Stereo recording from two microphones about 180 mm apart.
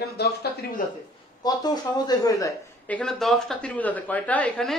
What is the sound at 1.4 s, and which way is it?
Speech, 20° left (ahead or behind).